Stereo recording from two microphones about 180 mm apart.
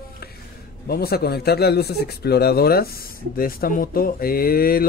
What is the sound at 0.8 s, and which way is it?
A man's voice, 60° left (ahead or behind).